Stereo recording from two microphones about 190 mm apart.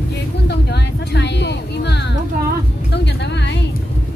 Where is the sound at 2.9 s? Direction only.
65° left (ahead or behind).